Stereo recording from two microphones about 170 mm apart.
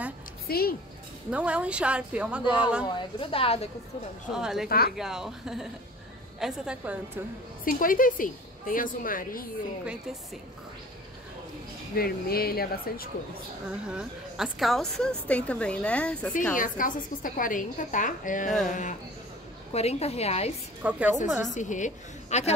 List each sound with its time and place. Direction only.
0.5 s a woman's voice: 65° left (ahead or behind)
1.3 s a woman's voice: 5° right (ahead or behind)
3.2 s a woman's voice: 30° left (ahead or behind)
4.3 s a woman's voice: 5° right (ahead or behind)
4.6 s a woman's voice: 65° left (ahead or behind)
4.9 s a woman's voice: 5° right (ahead or behind)
7.6 s a woman's voice: 55° left (ahead or behind)
12.0 s a woman's voice: 60° left (ahead or behind)
13.7 s a woman's voice: 5° right (ahead or behind)
16.5 s a woman's voice: 50° left (ahead or behind)
20.8 s a woman's voice: 10° right (ahead or behind)
21.5 s a woman's voice: 45° left (ahead or behind)